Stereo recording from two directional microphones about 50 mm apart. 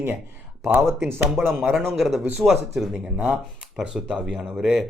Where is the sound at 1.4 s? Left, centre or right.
Centre.